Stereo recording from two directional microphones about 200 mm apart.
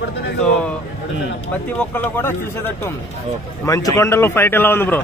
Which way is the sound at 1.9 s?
10° left (ahead or behind).